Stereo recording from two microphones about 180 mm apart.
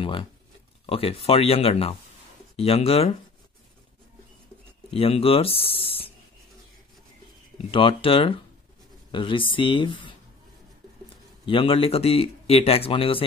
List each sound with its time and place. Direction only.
0.0 s speech: 30° left (ahead or behind)
4.9 s speech: 30° left (ahead or behind)
7.7 s speech: 30° left (ahead or behind)
11.4 s speech: 30° left (ahead or behind)